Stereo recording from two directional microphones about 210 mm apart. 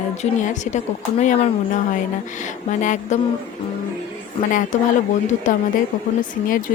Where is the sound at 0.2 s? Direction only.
35° left (ahead or behind).